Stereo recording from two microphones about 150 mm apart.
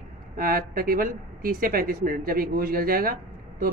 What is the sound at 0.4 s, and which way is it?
Speech, 75° right (ahead or behind).